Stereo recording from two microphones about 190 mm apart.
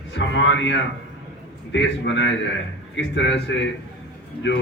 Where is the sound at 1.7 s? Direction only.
70° left (ahead or behind).